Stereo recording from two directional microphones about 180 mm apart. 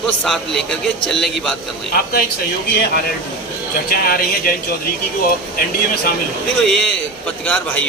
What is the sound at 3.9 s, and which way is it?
Speech, 55° left (ahead or behind).